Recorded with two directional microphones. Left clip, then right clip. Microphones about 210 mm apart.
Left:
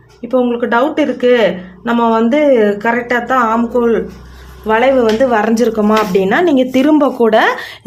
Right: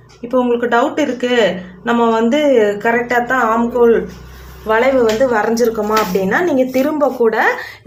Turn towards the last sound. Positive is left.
turn(degrees=55)  # may be behind; listen again after turning